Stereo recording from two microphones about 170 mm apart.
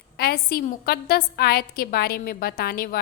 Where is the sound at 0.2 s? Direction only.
60° left (ahead or behind).